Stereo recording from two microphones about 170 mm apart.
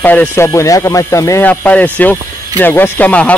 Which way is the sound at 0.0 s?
10° left (ahead or behind).